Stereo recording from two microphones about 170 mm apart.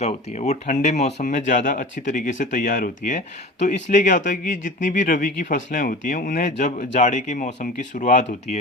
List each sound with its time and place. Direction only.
0.0 s speech: 40° left (ahead or behind)